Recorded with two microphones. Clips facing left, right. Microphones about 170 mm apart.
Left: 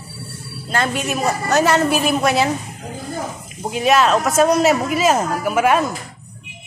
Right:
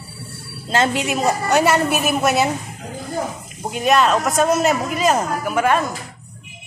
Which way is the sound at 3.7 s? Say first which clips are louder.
Left 1 dB; centre (ahead or behind).